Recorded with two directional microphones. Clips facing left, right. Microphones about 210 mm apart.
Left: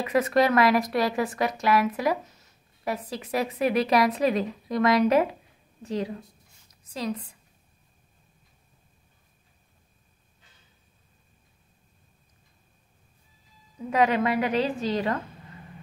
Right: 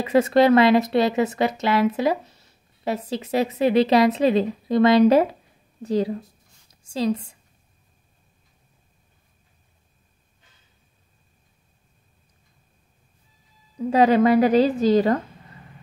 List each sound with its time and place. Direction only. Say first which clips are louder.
0.0 s a woman's voice: right 5 dB; 30° right (ahead or behind)
13.7 s a woman's voice: right 6 dB; 30° right (ahead or behind)